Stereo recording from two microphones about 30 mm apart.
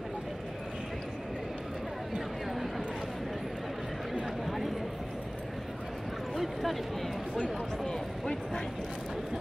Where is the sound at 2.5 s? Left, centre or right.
Centre.